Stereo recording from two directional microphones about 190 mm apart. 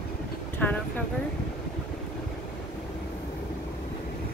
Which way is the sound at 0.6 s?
10° left (ahead or behind).